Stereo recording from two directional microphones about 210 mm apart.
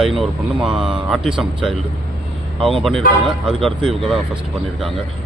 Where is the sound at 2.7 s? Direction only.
Centre (ahead or behind).